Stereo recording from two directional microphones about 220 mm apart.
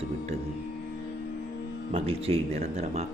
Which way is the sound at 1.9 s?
25° right (ahead or behind).